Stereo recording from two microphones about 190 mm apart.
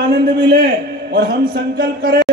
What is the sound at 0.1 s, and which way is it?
A man's voice, 60° right (ahead or behind).